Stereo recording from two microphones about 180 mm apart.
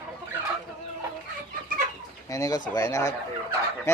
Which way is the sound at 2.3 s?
20° left (ahead or behind).